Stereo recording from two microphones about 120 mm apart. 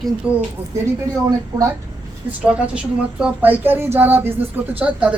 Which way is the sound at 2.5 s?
10° right (ahead or behind).